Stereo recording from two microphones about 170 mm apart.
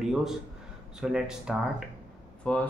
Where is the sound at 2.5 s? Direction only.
5° left (ahead or behind).